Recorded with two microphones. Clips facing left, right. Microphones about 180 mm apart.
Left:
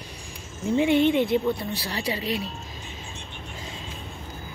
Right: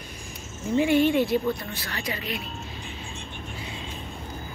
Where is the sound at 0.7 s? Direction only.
20° left (ahead or behind).